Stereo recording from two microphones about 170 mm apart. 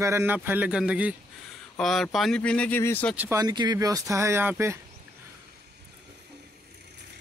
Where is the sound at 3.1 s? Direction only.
10° right (ahead or behind).